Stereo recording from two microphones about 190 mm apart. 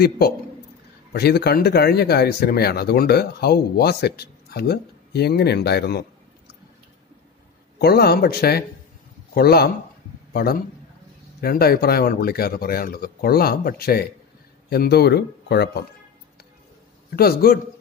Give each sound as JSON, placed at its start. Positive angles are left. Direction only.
{"t": 1.1, "sound": "speech", "side_deg": 55}
{"t": 7.8, "sound": "speech", "side_deg": 55}
{"t": 17.1, "sound": "speech", "side_deg": 55}